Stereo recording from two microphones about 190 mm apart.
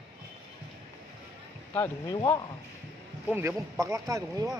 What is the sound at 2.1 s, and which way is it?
Speech, 20° left (ahead or behind).